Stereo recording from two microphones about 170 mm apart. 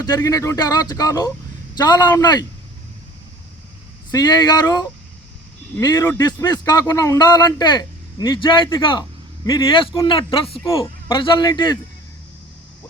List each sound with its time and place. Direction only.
0.0 s speech: 20° left (ahead or behind)
4.1 s speech: 20° left (ahead or behind)